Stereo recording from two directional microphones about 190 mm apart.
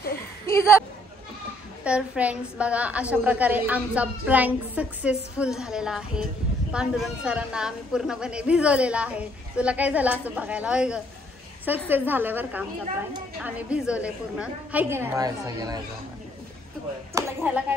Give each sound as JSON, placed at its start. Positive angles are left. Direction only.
{"t": 0.5, "sound": "a sound", "side_deg": 15}
{"t": 1.9, "sound": "a woman's voice", "side_deg": -5}
{"t": 17.1, "sound": "a woman's voice", "side_deg": -10}